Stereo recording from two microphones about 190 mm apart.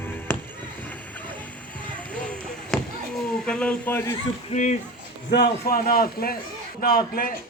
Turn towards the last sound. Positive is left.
turn(degrees=50)  # may be behind; listen again after turning